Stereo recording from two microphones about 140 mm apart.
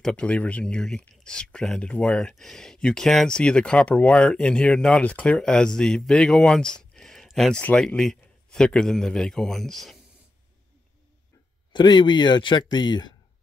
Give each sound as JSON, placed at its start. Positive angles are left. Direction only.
{"t": 0.0, "sound": "a man's voice", "side_deg": 10}
{"t": 11.7, "sound": "speech", "side_deg": 30}